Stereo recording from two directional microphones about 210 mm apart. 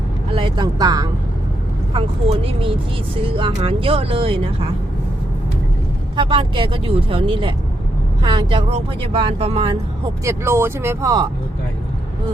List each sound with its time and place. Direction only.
0.3 s speech: 20° right (ahead or behind)
6.1 s speech: 25° right (ahead or behind)
10.2 s speech: 10° right (ahead or behind)